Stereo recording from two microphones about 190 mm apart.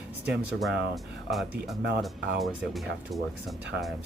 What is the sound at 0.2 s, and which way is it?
Speech, 5° right (ahead or behind).